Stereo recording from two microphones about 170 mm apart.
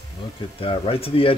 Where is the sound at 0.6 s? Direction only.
30° left (ahead or behind).